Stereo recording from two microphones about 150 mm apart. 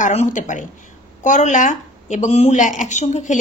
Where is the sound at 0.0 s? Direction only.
50° left (ahead or behind).